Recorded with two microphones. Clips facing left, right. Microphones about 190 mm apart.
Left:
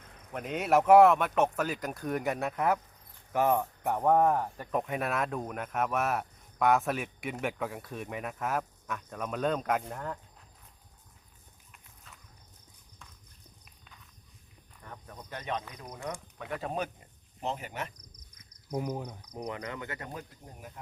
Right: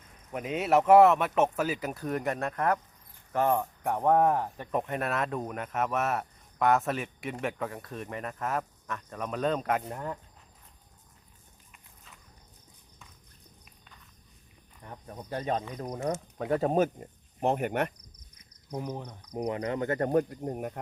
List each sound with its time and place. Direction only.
0.3 s speech: 5° right (ahead or behind)
11.7 s walk: centre (ahead or behind)
14.8 s speech: 30° right (ahead or behind); by 17.9 s 60° right (ahead or behind)
18.7 s speech: 10° left (ahead or behind)
19.5 s speech: 30° right (ahead or behind)
19.9 s speech: 55° right (ahead or behind)